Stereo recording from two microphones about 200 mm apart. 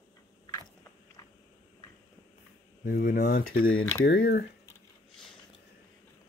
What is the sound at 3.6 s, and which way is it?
Speech, 90° left.